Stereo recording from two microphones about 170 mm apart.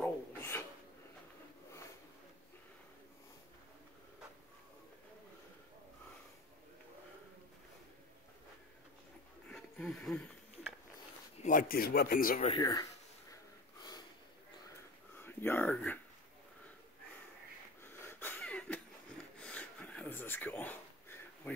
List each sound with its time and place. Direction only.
0.0 s filing: 15° left (ahead or behind)
9.5 s a sound: 5° left (ahead or behind)
11.4 s speech: 55° left (ahead or behind)
12.5 s speech: 25° left (ahead or behind)
15.1 s speech: 10° left (ahead or behind)
17.8 s wheeze: 15° left (ahead or behind)
19.4 s a sound: 5° left (ahead or behind)